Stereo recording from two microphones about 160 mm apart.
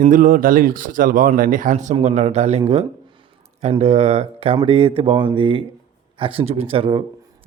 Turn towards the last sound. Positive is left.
turn(degrees=-35)  # may be behind; listen again after turning